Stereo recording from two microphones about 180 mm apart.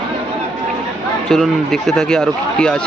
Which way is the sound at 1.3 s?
Centre (ahead or behind).